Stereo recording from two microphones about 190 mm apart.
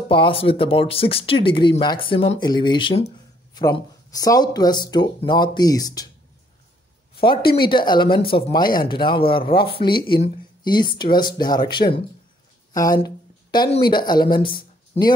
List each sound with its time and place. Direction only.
0.1 s speech: 25° left (ahead or behind)
7.6 s speech: 25° left (ahead or behind)